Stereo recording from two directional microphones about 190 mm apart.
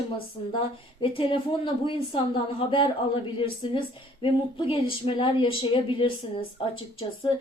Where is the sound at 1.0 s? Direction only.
25° left (ahead or behind).